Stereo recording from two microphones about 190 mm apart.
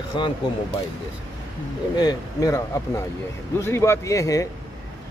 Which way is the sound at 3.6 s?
15° left (ahead or behind).